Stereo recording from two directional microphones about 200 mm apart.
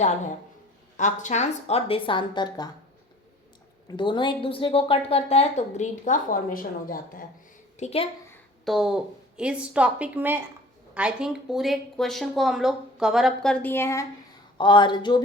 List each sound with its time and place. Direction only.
0.9 s a woman's voice: 40° left (ahead or behind); by 2.6 s 20° left (ahead or behind)
3.8 s a woman's voice: 25° left (ahead or behind); by 7.3 s 45° left (ahead or behind)
7.8 s a woman's voice: 30° left (ahead or behind)
8.6 s speech: centre (ahead or behind)
14.6 s a woman's voice: 25° left (ahead or behind)